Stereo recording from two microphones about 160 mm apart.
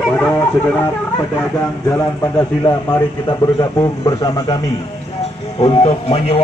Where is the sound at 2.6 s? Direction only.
25° left (ahead or behind).